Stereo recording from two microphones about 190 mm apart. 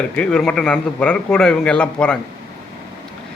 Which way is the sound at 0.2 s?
5° left (ahead or behind).